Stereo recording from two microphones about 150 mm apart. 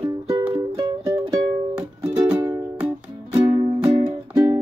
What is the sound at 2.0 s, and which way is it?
Music, 10° right (ahead or behind).